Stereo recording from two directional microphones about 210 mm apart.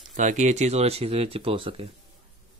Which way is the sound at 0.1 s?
35° right (ahead or behind).